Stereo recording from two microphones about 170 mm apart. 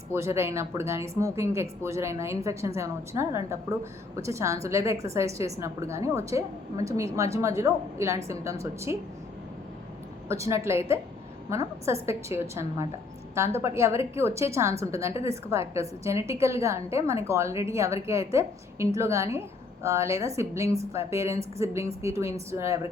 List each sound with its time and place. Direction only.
0.1 s speech: 15° right (ahead or behind)
10.2 s speech: 15° right (ahead or behind)